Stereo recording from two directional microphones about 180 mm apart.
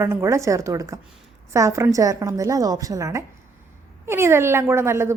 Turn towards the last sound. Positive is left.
turn(degrees=-15)  # may be behind; listen again after turning